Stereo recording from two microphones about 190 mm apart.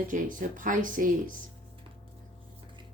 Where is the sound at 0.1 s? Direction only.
45° right (ahead or behind).